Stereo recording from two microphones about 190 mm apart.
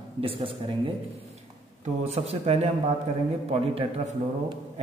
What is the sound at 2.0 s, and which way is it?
A man's voice, 35° right (ahead or behind).